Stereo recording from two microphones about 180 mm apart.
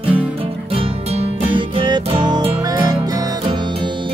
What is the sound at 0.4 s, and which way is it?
Music, 35° right (ahead or behind).